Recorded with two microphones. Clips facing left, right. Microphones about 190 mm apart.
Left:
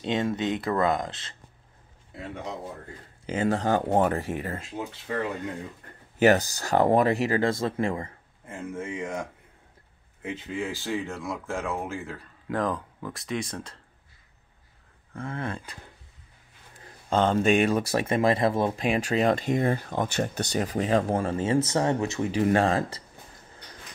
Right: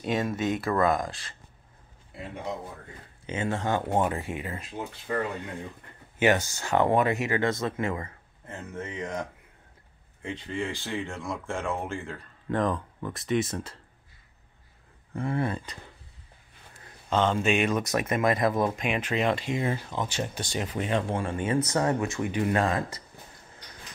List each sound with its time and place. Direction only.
0.0 s speech: 25° left (ahead or behind)
3.3 s speech: 35° left (ahead or behind)
5.9 s speech: 40° left (ahead or behind)
8.5 s speech: 10° left (ahead or behind)
15.1 s speech: 15° right (ahead or behind)
17.1 s speech: 40° left (ahead or behind)
20.6 s speech: 35° left (ahead or behind)